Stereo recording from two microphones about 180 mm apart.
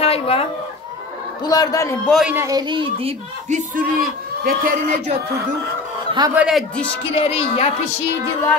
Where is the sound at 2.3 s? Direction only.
20° right (ahead or behind); by 3.8 s 40° right (ahead or behind).